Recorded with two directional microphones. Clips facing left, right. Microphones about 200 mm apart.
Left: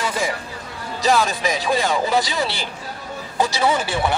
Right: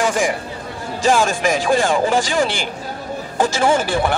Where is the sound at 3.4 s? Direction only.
45° right (ahead or behind).